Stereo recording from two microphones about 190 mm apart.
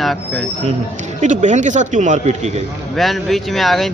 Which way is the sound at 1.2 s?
40° right (ahead or behind).